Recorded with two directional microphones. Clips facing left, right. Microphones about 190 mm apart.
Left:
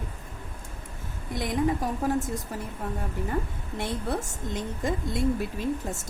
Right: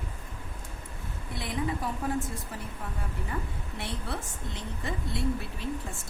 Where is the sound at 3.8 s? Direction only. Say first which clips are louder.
Left 7 dB; 45° left (ahead or behind).